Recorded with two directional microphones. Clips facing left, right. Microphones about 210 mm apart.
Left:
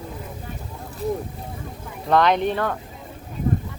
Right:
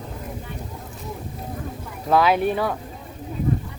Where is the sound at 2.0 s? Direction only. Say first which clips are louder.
Even; 5° right (ahead or behind).